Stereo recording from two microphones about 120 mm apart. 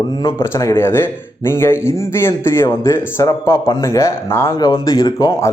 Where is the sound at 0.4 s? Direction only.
20° left (ahead or behind).